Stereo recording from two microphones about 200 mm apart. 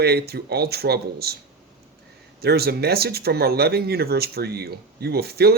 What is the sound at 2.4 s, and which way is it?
Speech, 50° right (ahead or behind).